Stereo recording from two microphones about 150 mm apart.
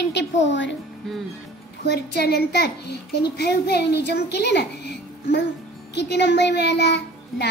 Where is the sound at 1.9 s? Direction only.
90° left.